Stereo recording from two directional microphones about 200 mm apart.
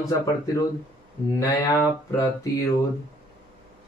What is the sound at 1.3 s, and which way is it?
A man's voice, 15° left (ahead or behind).